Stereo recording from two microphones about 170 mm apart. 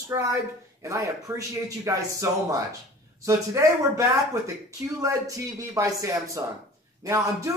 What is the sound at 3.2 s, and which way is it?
A man's voice, 15° right (ahead or behind).